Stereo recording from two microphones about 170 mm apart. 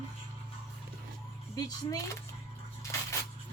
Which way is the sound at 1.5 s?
20° left (ahead or behind).